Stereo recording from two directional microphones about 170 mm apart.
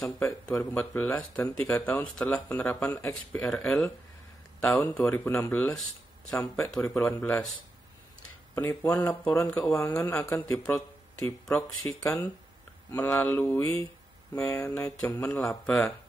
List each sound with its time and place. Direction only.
0.2 s speech: 5° left (ahead or behind)
8.5 s speech: 15° left (ahead or behind)
9.6 s speech: 5° left (ahead or behind)